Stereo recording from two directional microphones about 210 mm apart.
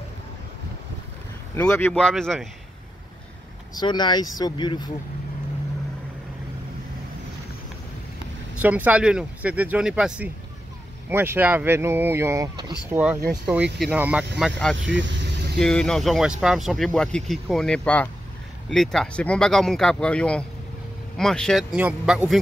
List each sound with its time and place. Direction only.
1.5 s speech: 10° left (ahead or behind)
3.7 s speech: 20° left (ahead or behind)
8.5 s speech: 10° right (ahead or behind)
14.9 s speech: 60° right (ahead or behind)
15.6 s speech: 5° left (ahead or behind)